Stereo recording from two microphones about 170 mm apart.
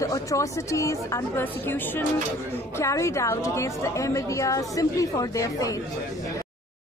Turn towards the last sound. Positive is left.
turn(degrees=20)  # may be behind; listen again after turning